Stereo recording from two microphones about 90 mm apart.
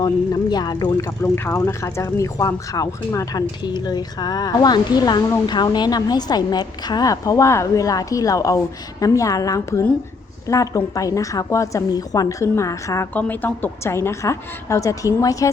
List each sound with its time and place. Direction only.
0.5 s a woman's voice: 50° left (ahead or behind)
1.2 s a woman's voice: 30° left (ahead or behind)
3.6 s a woman's voice: 50° left (ahead or behind); by 13.1 s 35° left (ahead or behind)
13.1 s a woman's voice: 20° left (ahead or behind); by 15.4 s 40° left (ahead or behind)